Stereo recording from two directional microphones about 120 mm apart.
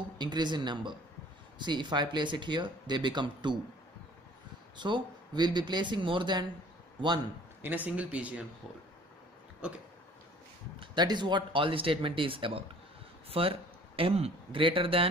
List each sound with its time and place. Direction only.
0.2 s speech: 35° right (ahead or behind)
4.7 s speech: 40° right (ahead or behind)
7.6 s speech: 15° right (ahead or behind)
10.8 s speech: 40° right (ahead or behind)